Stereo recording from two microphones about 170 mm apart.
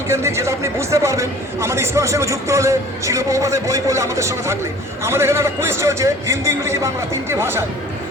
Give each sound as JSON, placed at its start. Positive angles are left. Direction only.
{"t": 0.1, "sound": "speech", "side_deg": -15}